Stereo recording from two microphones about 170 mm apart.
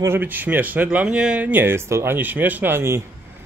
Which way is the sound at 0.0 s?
10° right (ahead or behind).